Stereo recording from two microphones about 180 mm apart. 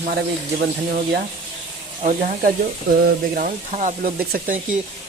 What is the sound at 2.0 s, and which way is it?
Speech, 50° right (ahead or behind).